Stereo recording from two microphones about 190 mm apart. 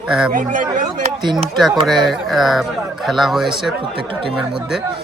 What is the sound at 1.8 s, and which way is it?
Speech, centre (ahead or behind).